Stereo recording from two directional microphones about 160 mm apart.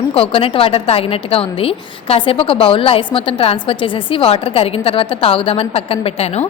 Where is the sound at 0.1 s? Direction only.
35° left (ahead or behind).